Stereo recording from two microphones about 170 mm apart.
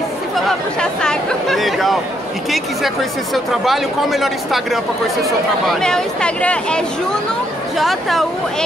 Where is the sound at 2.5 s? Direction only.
Centre (ahead or behind).